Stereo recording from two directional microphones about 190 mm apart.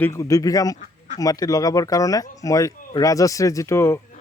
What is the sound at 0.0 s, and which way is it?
Speech, 15° left (ahead or behind).